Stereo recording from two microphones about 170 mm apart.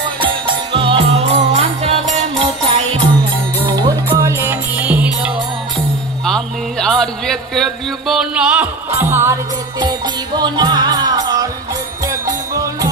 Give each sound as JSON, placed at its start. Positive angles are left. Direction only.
{"t": 0.7, "sound": "music", "side_deg": -30}
{"t": 2.4, "sound": "music", "side_deg": -30}
{"t": 4.3, "sound": "music", "side_deg": -15}
{"t": 6.2, "sound": "a sound", "side_deg": 5}
{"t": 8.9, "sound": "music", "side_deg": -15}